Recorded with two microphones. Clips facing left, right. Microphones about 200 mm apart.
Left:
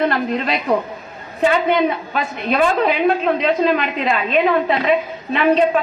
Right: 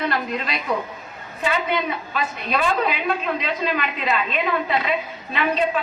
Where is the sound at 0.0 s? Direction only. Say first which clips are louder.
Left 6 dB; 45° left (ahead or behind).